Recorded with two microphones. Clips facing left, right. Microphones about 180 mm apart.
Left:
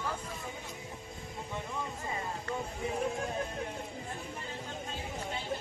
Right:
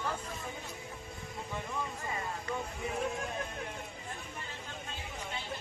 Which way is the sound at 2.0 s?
25° left (ahead or behind).